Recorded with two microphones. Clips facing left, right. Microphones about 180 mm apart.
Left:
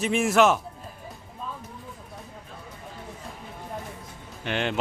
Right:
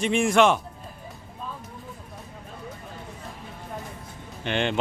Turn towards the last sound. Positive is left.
turn(degrees=5)  # may be behind; listen again after turning